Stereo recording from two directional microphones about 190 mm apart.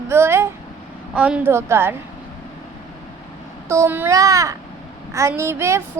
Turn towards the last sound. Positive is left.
turn(degrees=-15)  # may be behind; listen again after turning